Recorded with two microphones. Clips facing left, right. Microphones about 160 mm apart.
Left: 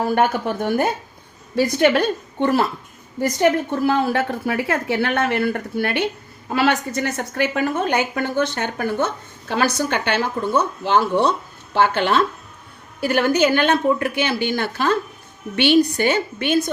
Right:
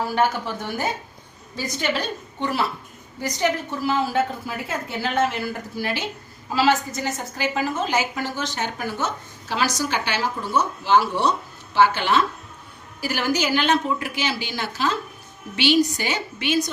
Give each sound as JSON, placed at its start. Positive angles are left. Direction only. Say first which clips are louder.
{"t": 0.0, "sound": "a woman's voice", "louder": "left 4 dB", "side_deg": 55}